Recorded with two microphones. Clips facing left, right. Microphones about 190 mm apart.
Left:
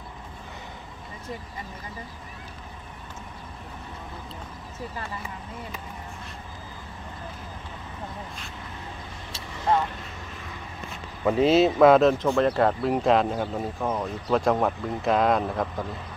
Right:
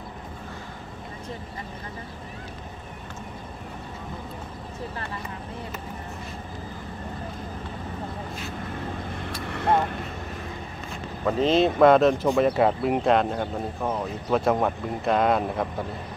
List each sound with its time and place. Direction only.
9.5 s vehicle: 60° right (ahead or behind)
11.2 s speech: 10° left (ahead or behind)